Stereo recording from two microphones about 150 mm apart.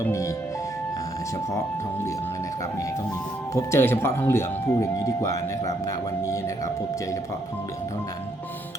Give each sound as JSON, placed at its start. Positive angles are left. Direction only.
{"t": 3.5, "sound": "speech", "side_deg": 15}